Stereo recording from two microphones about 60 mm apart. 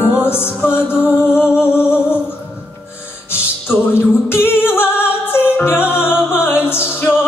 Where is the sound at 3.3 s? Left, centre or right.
Left.